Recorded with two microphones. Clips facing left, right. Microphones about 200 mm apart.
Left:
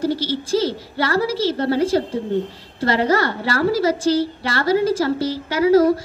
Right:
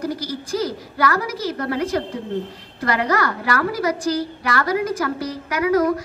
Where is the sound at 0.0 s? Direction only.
30° left (ahead or behind).